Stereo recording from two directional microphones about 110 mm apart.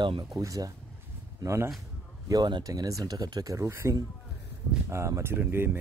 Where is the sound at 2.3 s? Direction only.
40° right (ahead or behind); by 5.6 s 20° right (ahead or behind).